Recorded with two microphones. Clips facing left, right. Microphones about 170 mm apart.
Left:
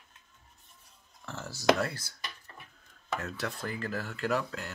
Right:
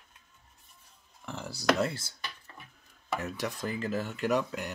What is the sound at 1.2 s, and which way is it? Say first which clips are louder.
Speech: left 2 dB; 15° right (ahead or behind).